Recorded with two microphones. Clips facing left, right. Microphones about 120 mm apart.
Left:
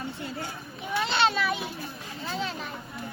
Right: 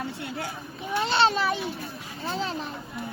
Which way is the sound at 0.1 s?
85° right.